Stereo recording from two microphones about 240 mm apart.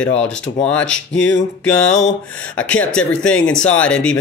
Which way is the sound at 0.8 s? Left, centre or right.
Left.